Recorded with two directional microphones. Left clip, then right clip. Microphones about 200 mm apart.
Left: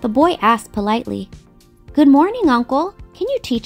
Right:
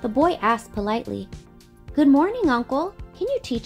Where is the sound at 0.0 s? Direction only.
45° left (ahead or behind).